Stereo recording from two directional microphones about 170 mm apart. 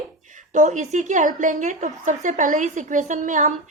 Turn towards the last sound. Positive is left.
turn(degrees=-50)  # may be behind; listen again after turning